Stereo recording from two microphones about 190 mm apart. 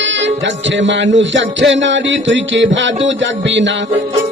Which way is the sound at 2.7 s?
75° right (ahead or behind).